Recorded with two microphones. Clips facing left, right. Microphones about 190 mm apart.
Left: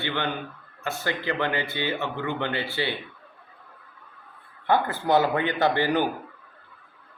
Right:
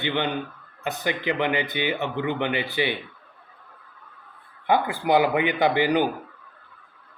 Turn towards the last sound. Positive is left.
turn(degrees=-15)  # may be behind; listen again after turning